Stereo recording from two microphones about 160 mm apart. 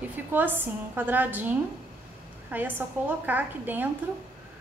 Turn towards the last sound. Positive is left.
turn(degrees=-10)  # may be behind; listen again after turning